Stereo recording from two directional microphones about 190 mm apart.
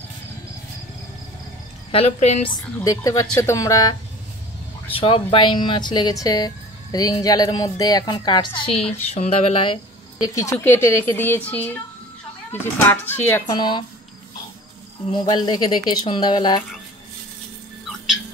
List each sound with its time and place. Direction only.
1.9 s a woman's voice: 30° left (ahead or behind)
2.8 s a woman's voice: 20° left (ahead or behind)
4.9 s speech: 30° left (ahead or behind)
10.2 s a woman's voice: 15° left (ahead or behind)
13.6 s speech: 25° left (ahead or behind)
15.1 s speech: 20° left (ahead or behind)